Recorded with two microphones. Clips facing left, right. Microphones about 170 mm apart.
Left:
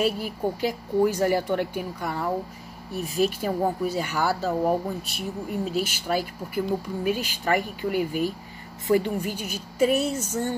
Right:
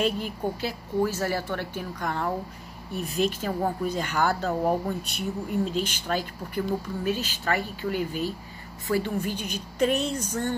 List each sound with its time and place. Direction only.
0.0 s speech: 10° left (ahead or behind)